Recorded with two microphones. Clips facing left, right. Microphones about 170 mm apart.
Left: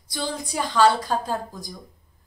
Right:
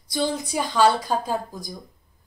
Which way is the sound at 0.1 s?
20° right (ahead or behind).